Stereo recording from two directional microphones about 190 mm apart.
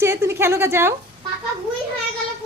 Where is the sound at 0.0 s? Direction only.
15° right (ahead or behind).